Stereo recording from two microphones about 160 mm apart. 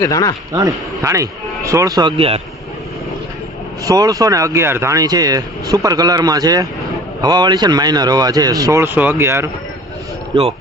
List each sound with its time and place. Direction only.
0.0 s a man's voice: 20° left (ahead or behind)
0.5 s speech: 20° right (ahead or behind)
3.8 s speech: 25° right (ahead or behind)